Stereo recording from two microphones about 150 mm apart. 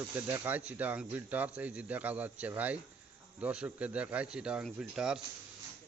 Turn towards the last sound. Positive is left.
turn(degrees=-5)  # may be behind; listen again after turning